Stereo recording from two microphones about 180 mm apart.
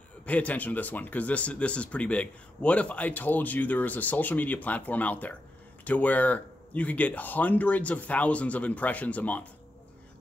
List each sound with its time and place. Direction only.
0.3 s speech: 10° left (ahead or behind)